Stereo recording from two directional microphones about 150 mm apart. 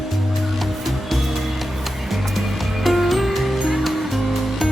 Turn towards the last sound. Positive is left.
turn(degrees=0)  # may be behind; listen again after turning